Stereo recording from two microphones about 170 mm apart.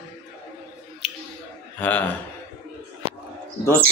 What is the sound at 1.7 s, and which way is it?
Speech, 10° left (ahead or behind).